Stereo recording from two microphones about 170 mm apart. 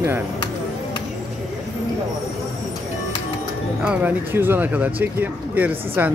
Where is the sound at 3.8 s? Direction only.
10° right (ahead or behind).